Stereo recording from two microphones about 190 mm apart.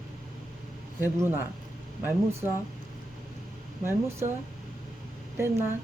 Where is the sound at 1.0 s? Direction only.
10° right (ahead or behind).